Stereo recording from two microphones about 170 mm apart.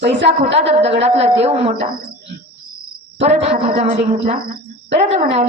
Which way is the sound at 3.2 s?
40° right (ahead or behind).